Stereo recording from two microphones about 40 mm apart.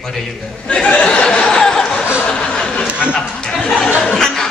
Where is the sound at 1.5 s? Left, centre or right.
Centre.